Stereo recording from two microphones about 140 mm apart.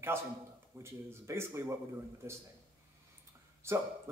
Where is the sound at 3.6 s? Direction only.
20° right (ahead or behind).